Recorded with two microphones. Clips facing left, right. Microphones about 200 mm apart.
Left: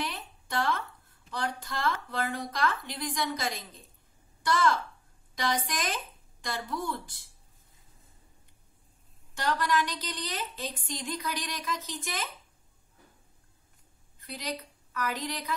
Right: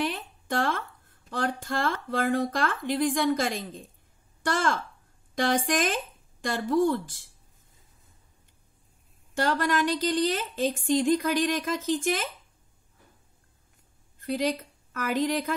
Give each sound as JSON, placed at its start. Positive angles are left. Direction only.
{"t": 0.0, "sound": "a sound", "side_deg": -45}
{"t": 1.3, "sound": "speech", "side_deg": -50}
{"t": 9.3, "sound": "speech", "side_deg": -50}
{"t": 14.2, "sound": "a woman's voice", "side_deg": -50}